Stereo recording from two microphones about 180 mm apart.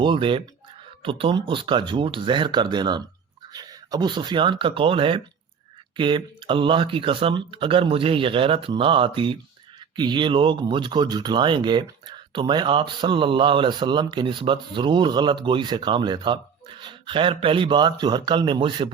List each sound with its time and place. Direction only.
0.0 s speech: 30° right (ahead or behind)